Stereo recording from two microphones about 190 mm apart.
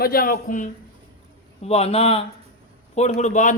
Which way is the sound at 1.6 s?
35° left (ahead or behind).